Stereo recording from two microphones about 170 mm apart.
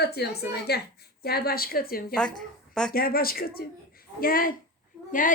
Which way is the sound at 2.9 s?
60° left (ahead or behind).